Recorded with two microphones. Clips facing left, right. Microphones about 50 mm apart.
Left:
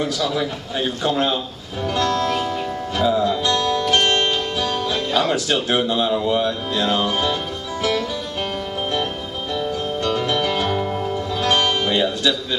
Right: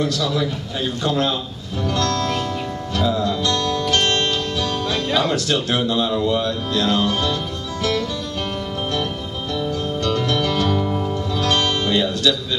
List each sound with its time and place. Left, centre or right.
0.0 s speech: centre
3.0 s music: centre
5.5 s speech: centre
9.6 s music: centre